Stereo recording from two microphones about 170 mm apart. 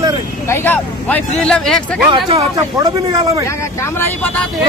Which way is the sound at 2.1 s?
30° right (ahead or behind).